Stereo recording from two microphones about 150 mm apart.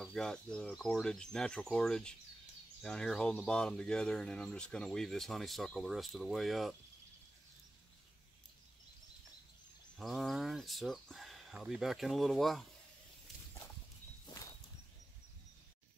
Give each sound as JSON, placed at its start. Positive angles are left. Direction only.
{"t": 0.0, "sound": "speech", "side_deg": 5}
{"t": 9.9, "sound": "speech", "side_deg": 0}
{"t": 14.3, "sound": "walk", "side_deg": 30}